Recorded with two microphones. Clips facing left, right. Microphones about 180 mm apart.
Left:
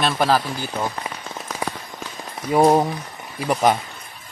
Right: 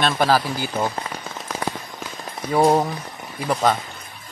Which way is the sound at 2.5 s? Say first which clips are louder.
Left 2 dB; 15° left (ahead or behind).